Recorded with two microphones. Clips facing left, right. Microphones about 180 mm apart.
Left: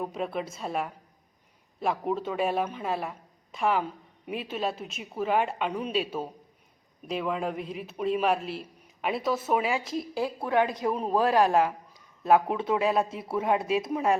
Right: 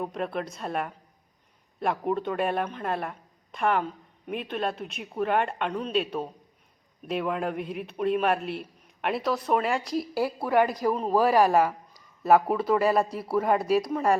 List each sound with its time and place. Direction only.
0.0 s a man's voice: centre (ahead or behind)